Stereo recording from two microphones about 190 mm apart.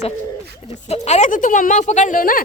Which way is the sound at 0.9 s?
35° left (ahead or behind).